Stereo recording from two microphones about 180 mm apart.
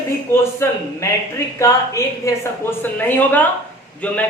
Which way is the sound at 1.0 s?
15° left (ahead or behind).